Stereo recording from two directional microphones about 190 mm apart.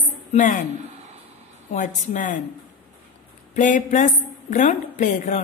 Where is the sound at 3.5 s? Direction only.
40° left (ahead or behind).